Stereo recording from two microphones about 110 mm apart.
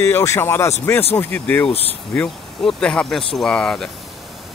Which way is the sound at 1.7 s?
65° left (ahead or behind).